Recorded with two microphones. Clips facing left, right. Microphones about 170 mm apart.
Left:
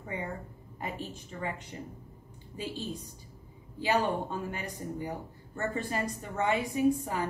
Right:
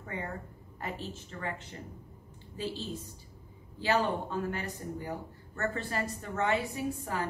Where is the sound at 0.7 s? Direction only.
15° left (ahead or behind).